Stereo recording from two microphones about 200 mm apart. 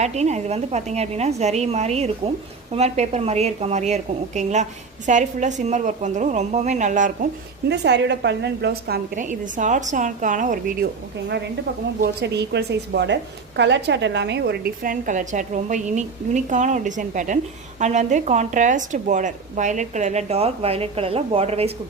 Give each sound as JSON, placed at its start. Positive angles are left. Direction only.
{"t": 0.0, "sound": "a woman's voice", "side_deg": -35}
{"t": 7.7, "sound": "a woman's voice", "side_deg": -60}
{"t": 12.2, "sound": "a woman's voice", "side_deg": -55}